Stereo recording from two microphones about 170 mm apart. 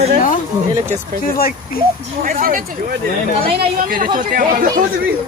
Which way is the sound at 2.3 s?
55° right (ahead or behind).